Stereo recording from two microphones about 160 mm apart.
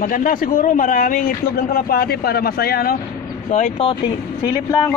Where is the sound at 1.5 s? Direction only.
70° left (ahead or behind).